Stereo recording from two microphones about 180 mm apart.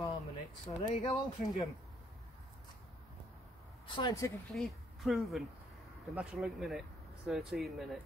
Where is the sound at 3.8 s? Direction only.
25° left (ahead or behind).